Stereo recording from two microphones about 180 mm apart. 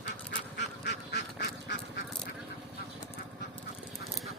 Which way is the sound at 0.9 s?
70° left (ahead or behind).